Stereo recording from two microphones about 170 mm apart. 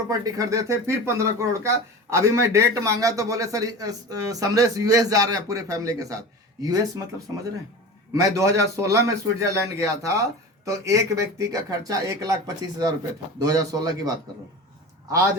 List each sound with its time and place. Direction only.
0.1 s speech: 20° right (ahead or behind)
8.1 s speech: 20° right (ahead or behind)
13.4 s speech: 20° right (ahead or behind)